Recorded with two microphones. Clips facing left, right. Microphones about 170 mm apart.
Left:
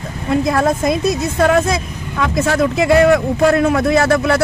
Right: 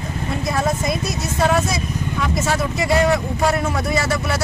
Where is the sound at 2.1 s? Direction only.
65° left (ahead or behind).